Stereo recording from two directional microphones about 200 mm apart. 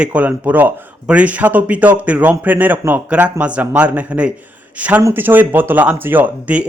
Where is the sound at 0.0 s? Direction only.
5° right (ahead or behind).